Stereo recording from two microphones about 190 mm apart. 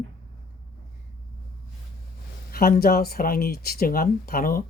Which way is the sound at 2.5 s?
50° left (ahead or behind).